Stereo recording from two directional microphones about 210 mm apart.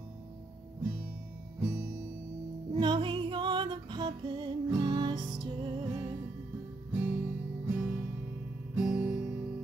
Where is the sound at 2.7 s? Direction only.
20° right (ahead or behind).